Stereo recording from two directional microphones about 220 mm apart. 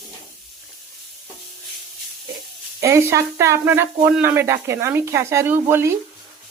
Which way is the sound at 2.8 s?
10° right (ahead or behind).